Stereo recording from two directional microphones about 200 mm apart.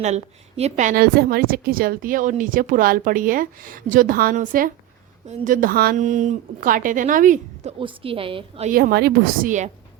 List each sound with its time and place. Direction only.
0.0 s a woman's voice: 35° right (ahead or behind)
7.8 s a woman's voice: 25° right (ahead or behind)
8.7 s a woman's voice: 50° right (ahead or behind)